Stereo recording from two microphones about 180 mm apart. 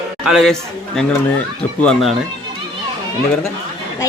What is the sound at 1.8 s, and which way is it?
Speech, 5° left (ahead or behind).